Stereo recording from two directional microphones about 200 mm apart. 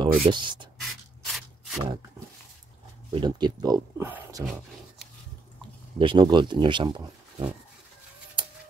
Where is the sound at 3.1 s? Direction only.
20° right (ahead or behind).